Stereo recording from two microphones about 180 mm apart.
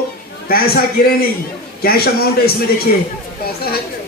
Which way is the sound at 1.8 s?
55° left (ahead or behind).